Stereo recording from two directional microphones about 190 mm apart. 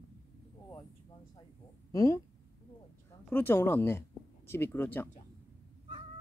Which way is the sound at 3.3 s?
10° left (ahead or behind).